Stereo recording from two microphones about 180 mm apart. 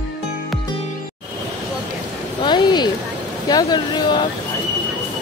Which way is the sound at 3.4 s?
25° left (ahead or behind).